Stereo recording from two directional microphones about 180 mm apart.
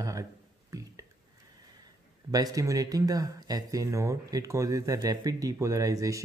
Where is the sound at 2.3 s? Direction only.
20° right (ahead or behind).